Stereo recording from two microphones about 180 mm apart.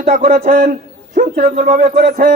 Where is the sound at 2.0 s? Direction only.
55° right (ahead or behind).